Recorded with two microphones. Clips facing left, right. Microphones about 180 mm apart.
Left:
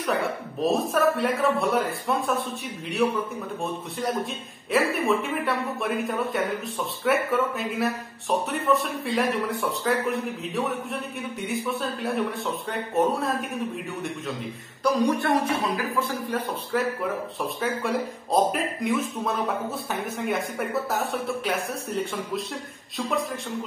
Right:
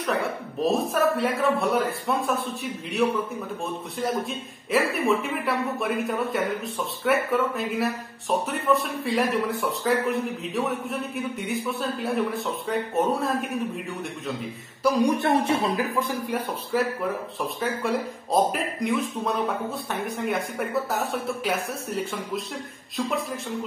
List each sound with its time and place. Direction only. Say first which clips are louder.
0.0 s speech: even; centre (ahead or behind)
15.0 s speech: right 1 dB; 20° right (ahead or behind)
16.7 s speech: right 1 dB; centre (ahead or behind)